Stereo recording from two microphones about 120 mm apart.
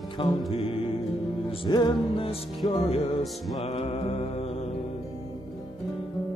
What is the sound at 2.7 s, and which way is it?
Mantra, 55° left (ahead or behind).